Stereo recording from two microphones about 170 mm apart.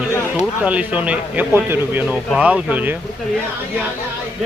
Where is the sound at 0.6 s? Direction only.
10° right (ahead or behind).